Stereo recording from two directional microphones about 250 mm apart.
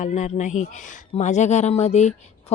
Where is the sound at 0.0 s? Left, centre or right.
Left.